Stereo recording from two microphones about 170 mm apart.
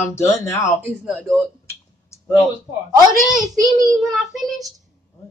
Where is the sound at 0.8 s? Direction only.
10° right (ahead or behind).